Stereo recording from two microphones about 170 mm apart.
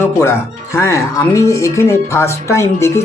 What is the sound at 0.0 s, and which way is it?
Speech, 15° left (ahead or behind).